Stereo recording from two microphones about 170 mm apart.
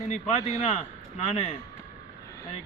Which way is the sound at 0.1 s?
40° left (ahead or behind).